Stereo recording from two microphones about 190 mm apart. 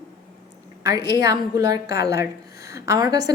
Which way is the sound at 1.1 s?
20° right (ahead or behind).